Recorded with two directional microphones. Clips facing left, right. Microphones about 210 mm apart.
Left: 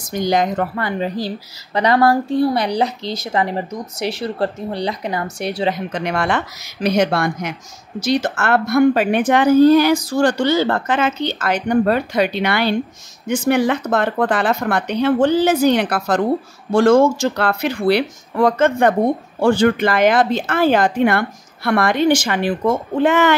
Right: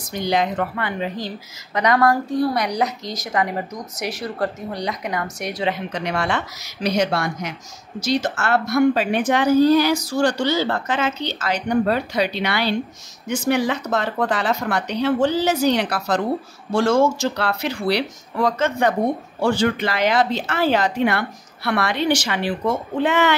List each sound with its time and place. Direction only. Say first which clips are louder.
0.1 s a woman's voice: left 3 dB; 45° left (ahead or behind)
5.9 s a woman's voice: left 3 dB; 50° left (ahead or behind)